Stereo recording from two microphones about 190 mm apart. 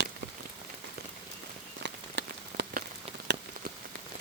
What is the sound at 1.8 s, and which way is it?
Rain on surface, 60° right (ahead or behind).